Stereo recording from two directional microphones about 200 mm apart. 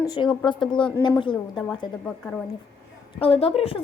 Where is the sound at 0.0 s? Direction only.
20° left (ahead or behind).